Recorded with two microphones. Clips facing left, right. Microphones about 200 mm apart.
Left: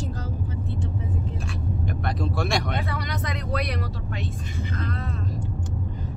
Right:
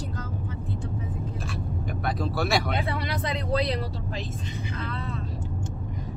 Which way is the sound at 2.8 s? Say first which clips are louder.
Right 1 dB; 30° right (ahead or behind).